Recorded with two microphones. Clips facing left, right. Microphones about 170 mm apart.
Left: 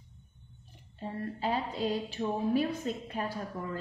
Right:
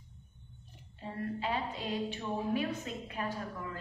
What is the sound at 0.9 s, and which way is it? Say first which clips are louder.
A woman's voice: left 1 dB; 35° left (ahead or behind).